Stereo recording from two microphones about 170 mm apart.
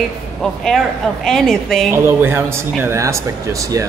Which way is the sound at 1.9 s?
15° right (ahead or behind).